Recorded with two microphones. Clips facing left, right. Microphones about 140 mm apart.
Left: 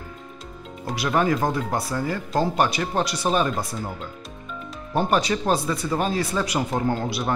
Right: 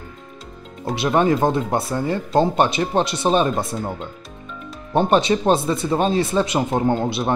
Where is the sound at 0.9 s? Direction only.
25° right (ahead or behind).